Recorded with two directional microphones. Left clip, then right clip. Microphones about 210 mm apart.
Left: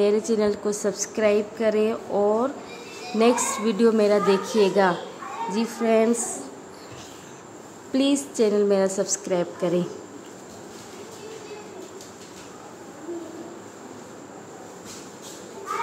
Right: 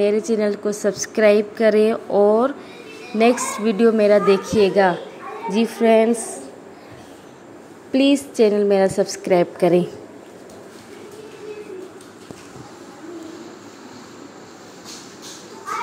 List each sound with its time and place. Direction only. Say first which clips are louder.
0.0 s a woman's voice: right 3 dB; 5° right (ahead or behind)
7.9 s a woman's voice: right 6 dB; 10° right (ahead or behind)